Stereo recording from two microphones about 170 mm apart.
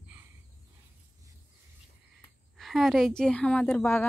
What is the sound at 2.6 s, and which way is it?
A woman's voice, centre (ahead or behind).